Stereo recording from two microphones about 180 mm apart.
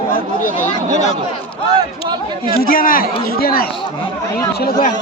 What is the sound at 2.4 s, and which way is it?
Speech, 55° left (ahead or behind).